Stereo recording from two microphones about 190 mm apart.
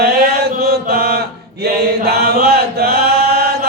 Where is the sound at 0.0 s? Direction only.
55° right (ahead or behind).